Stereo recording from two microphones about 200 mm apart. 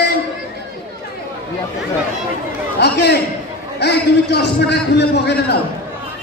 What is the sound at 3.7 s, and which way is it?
A man's voice, 55° left (ahead or behind).